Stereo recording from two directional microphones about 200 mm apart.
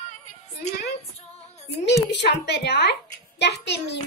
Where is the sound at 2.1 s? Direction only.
55° left (ahead or behind).